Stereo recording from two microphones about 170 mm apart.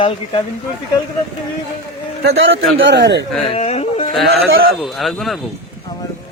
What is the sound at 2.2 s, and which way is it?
A man's voice, 90° right.